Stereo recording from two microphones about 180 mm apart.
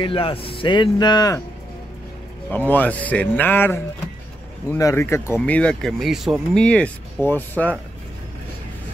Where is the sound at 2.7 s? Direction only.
10° left (ahead or behind).